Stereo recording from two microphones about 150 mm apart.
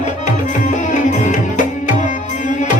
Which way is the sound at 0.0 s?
55° left (ahead or behind).